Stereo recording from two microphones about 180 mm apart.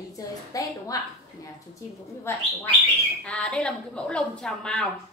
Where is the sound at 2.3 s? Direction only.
15° left (ahead or behind).